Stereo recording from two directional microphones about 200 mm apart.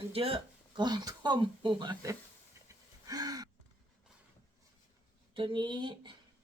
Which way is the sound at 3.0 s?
20° right (ahead or behind).